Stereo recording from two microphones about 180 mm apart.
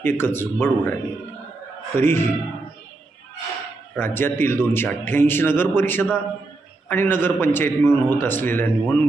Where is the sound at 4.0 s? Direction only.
10° left (ahead or behind).